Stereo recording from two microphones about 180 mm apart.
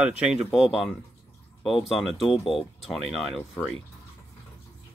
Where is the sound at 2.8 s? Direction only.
Centre (ahead or behind).